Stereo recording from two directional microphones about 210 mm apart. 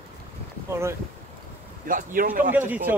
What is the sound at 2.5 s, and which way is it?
Speech, 10° right (ahead or behind).